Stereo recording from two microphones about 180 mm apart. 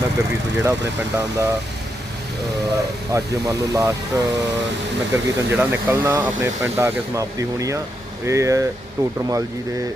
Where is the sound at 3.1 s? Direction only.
20° right (ahead or behind).